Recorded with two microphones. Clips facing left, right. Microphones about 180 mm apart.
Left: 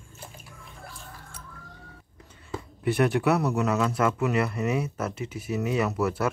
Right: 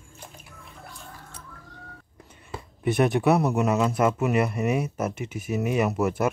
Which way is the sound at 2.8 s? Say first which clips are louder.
Right 2 dB; 20° right (ahead or behind).